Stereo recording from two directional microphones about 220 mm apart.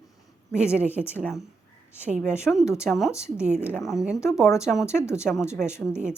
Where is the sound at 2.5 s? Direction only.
5° left (ahead or behind).